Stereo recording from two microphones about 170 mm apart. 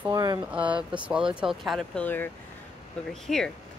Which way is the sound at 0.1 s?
25° right (ahead or behind).